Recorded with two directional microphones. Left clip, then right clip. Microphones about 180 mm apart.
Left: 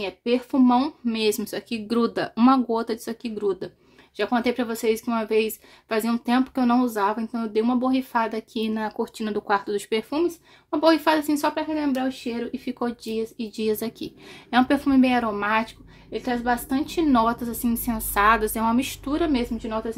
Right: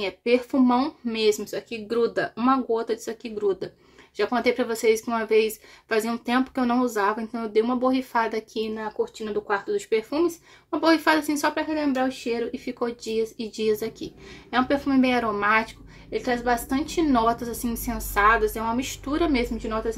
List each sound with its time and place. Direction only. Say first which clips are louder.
0.0 s a woman's voice: right 2 dB; 20° left (ahead or behind)
8.7 s speech: even; 45° left (ahead or behind)
10.0 s a woman's voice: even; 20° left (ahead or behind)
19.0 s a woman's voice: right 2 dB; 20° left (ahead or behind)